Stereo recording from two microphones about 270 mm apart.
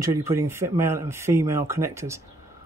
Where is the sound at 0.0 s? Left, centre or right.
Centre.